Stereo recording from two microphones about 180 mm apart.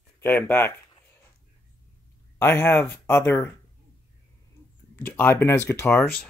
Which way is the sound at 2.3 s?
15° left (ahead or behind).